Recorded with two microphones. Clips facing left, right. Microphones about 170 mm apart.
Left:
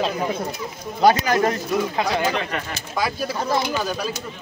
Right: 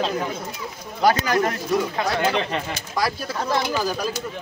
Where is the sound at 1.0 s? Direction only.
25° left (ahead or behind).